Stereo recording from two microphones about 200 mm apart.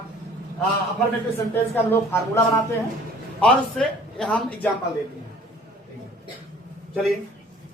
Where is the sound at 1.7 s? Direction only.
10° left (ahead or behind).